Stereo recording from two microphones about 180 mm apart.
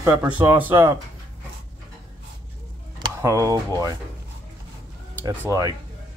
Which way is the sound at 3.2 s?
15° right (ahead or behind).